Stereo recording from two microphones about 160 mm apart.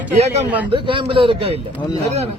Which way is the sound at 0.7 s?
35° right (ahead or behind).